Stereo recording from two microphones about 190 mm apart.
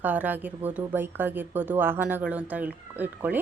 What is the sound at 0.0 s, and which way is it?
Speech, 10° right (ahead or behind).